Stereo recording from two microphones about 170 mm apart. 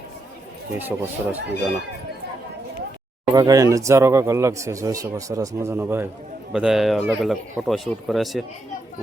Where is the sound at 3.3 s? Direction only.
20° right (ahead or behind).